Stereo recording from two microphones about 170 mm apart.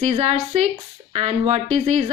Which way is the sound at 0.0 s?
40° right (ahead or behind).